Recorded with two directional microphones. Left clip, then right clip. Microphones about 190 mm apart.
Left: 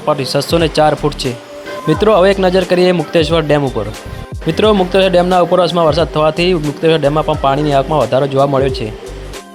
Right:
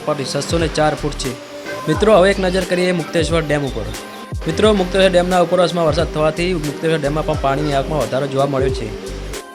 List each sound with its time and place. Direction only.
0.1 s speech: 15° left (ahead or behind)